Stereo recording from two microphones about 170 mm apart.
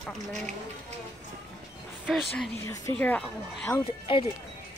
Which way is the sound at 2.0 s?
Centre (ahead or behind).